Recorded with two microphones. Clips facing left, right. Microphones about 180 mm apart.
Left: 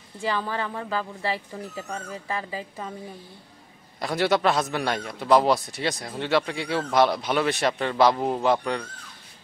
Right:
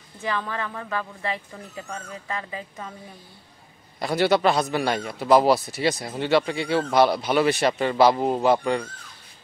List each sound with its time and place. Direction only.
0.5 s speech: 30° left (ahead or behind)
4.0 s a man's voice: centre (ahead or behind)